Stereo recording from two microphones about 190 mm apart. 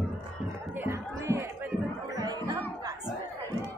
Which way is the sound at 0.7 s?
10° right (ahead or behind).